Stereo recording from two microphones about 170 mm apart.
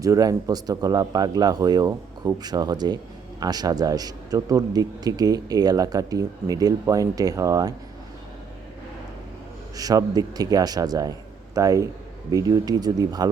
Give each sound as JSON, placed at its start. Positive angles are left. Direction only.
{"t": 0.0, "sound": "a man's voice", "side_deg": -20}
{"t": 9.7, "sound": "a man's voice", "side_deg": -20}